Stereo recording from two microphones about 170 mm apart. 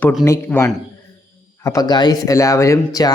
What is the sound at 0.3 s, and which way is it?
Speech, 15° left (ahead or behind).